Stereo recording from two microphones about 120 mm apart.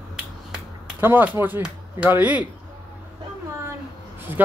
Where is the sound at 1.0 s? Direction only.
15° right (ahead or behind).